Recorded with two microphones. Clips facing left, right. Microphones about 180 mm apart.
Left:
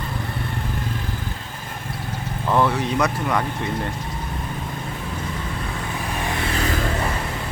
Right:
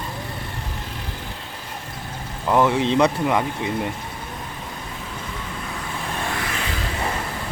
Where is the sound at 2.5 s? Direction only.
20° right (ahead or behind).